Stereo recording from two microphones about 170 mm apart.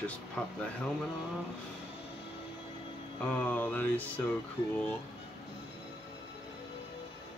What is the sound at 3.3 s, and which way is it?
Speech, 10° left (ahead or behind).